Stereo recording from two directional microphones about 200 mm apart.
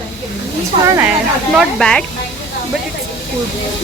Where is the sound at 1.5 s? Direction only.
5° left (ahead or behind).